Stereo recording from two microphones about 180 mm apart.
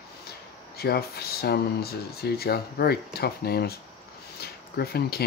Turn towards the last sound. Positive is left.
turn(degrees=60)  # may be behind; listen again after turning